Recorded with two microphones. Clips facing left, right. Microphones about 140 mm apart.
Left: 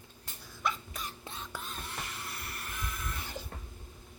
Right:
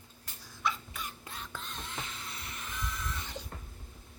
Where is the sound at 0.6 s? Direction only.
40° left (ahead or behind).